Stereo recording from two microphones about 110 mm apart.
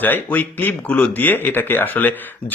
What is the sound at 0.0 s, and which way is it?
Speech, 15° left (ahead or behind).